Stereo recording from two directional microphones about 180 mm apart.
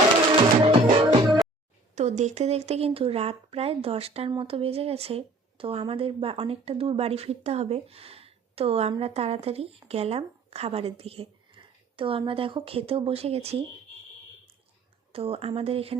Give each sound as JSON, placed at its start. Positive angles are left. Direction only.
{"t": 0.6, "sound": "music", "side_deg": -30}
{"t": 2.0, "sound": "a woman's voice", "side_deg": -40}
{"t": 15.1, "sound": "speech", "side_deg": -30}